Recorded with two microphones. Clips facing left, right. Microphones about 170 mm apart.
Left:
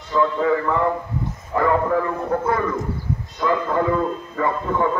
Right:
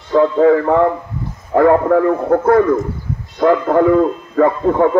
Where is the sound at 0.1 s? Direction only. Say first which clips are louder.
Right 8 dB; 55° right (ahead or behind).